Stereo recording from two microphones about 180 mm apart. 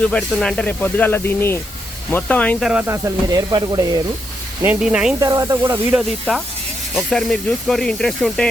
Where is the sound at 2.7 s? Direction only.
10° right (ahead or behind).